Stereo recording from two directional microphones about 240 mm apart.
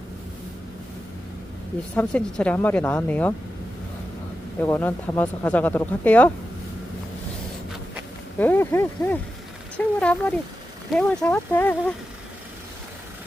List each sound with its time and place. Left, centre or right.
2.0 s speech: centre
4.6 s speech: centre
8.4 s speech: centre